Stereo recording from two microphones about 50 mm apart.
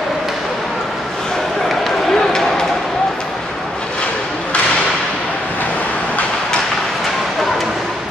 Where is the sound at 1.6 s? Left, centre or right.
Centre.